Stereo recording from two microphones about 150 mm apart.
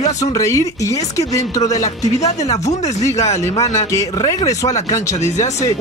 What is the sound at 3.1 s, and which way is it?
Speech, 45° left (ahead or behind).